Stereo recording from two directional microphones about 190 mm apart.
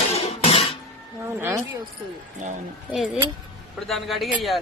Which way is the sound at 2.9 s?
Centre (ahead or behind).